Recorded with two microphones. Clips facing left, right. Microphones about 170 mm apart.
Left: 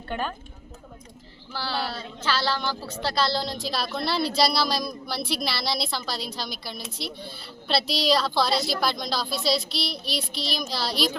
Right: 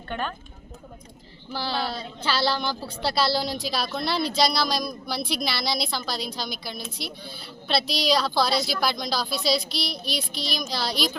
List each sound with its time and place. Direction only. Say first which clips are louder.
0.1 s speech: left 1 dB; 5° left (ahead or behind)
1.5 s a woman's voice: right 2 dB; 15° right (ahead or behind); by 11.2 s centre (ahead or behind)